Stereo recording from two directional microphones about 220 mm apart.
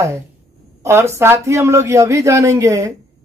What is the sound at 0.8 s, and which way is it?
Speech, 10° right (ahead or behind).